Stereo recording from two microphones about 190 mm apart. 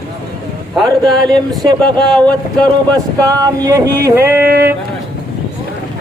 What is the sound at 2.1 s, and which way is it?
Speech, 5° left (ahead or behind).